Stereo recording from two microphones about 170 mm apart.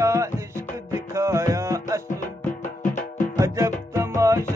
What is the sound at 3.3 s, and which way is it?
Music, 15° right (ahead or behind).